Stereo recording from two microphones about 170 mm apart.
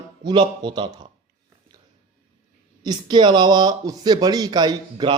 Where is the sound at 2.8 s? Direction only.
25° right (ahead or behind).